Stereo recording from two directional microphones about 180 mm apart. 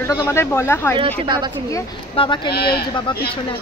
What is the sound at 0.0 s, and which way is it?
Speech, 15° left (ahead or behind).